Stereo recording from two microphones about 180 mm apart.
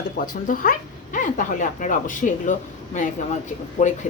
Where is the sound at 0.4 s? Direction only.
50° left (ahead or behind).